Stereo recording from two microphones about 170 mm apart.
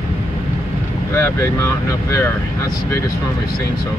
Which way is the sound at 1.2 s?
15° left (ahead or behind).